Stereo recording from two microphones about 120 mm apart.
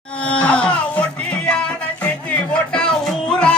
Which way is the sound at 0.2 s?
10° left (ahead or behind).